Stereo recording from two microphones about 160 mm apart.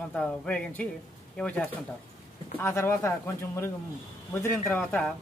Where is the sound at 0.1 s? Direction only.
5° left (ahead or behind).